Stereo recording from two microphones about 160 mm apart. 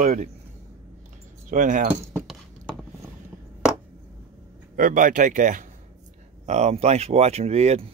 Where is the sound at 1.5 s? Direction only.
55° right (ahead or behind).